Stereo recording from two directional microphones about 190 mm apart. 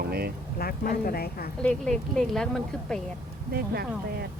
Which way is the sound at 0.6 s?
50° left (ahead or behind).